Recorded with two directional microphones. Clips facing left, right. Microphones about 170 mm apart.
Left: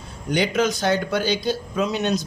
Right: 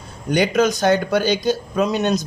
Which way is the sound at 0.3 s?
45° right (ahead or behind).